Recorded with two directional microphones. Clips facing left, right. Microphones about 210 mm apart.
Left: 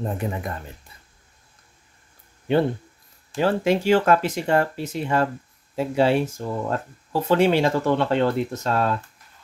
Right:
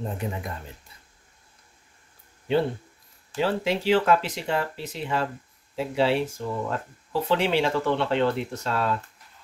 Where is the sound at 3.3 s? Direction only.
45° left (ahead or behind).